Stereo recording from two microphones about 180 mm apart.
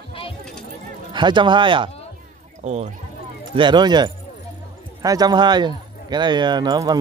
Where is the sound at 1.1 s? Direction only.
25° right (ahead or behind).